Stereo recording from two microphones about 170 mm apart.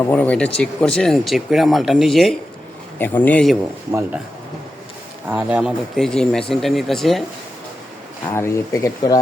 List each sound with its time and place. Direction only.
0.0 s speech: 10° left (ahead or behind)
5.3 s speech: 5° right (ahead or behind)
8.3 s speech: 15° left (ahead or behind)